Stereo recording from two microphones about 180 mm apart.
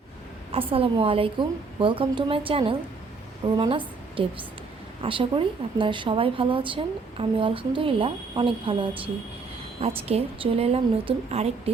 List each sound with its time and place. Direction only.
0.5 s a woman's voice: 30° right (ahead or behind)